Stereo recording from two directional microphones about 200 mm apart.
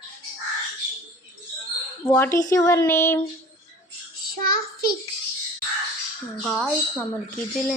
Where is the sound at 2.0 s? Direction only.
10° left (ahead or behind).